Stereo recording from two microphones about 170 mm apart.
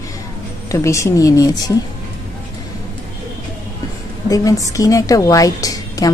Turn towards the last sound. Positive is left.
turn(degrees=20)  # may be behind; listen again after turning